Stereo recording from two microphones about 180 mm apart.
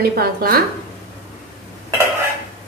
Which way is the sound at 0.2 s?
55° right (ahead or behind).